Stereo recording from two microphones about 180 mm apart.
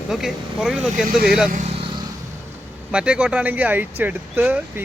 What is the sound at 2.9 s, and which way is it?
Speech, 5° right (ahead or behind).